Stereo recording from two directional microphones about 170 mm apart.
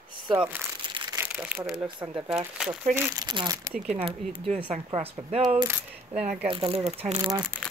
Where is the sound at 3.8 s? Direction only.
35° right (ahead or behind).